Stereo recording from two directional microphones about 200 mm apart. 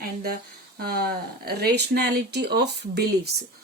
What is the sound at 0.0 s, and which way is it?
Speech, 50° right (ahead or behind).